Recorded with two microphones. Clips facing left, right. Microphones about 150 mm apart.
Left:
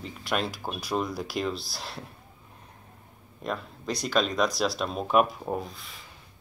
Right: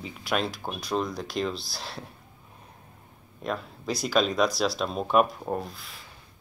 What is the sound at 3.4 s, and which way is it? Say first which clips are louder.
Speech: right 1 dB; centre (ahead or behind).